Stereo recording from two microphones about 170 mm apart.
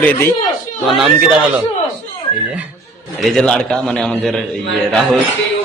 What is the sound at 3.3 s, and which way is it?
A man's voice, 5° left (ahead or behind).